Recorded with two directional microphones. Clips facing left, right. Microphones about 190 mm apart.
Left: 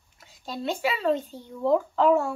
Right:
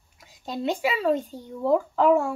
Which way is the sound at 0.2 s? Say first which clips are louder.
Right 4 dB; 15° right (ahead or behind).